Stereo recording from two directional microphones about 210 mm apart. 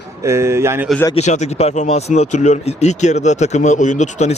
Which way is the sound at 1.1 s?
35° left (ahead or behind).